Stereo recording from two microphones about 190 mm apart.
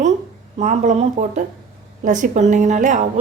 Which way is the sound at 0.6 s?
40° right (ahead or behind).